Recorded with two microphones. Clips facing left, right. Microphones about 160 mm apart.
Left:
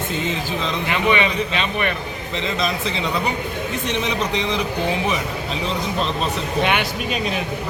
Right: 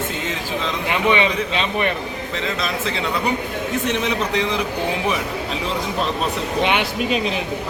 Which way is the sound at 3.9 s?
5° right (ahead or behind).